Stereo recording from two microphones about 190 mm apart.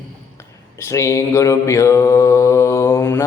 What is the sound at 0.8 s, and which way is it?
Mantra, 15° left (ahead or behind).